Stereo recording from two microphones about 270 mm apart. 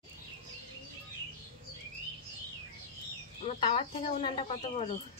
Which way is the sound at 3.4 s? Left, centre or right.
Left.